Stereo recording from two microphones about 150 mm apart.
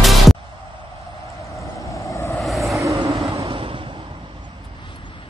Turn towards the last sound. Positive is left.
turn(degrees=-35)  # may be behind; listen again after turning